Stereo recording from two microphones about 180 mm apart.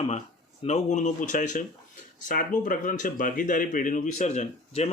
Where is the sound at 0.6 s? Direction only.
40° left (ahead or behind).